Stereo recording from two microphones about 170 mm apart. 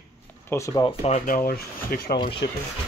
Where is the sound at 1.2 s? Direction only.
60° left (ahead or behind).